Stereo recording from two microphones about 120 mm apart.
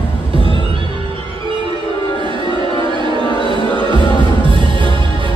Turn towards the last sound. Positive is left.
turn(degrees=-40)  # may be behind; listen again after turning